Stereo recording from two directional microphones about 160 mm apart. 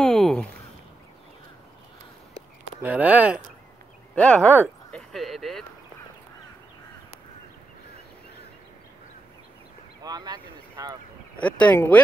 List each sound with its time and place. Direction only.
0.0 s a sound: centre (ahead or behind)
2.8 s speech: 10° right (ahead or behind)
4.1 s speech: 10° left (ahead or behind)
4.9 s a sound: centre (ahead or behind)
10.0 s speech: 25° right (ahead or behind)
11.3 s speech: 10° left (ahead or behind)